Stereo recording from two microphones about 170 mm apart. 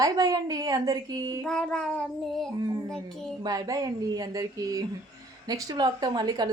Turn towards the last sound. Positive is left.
turn(degrees=-25)  # may be behind; listen again after turning